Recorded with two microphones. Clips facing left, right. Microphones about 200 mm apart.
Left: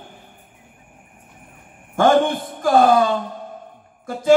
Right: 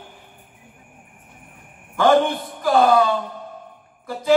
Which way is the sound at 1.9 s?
45° left (ahead or behind).